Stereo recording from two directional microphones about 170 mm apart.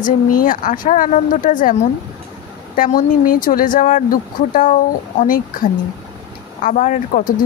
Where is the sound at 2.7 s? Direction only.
55° left (ahead or behind).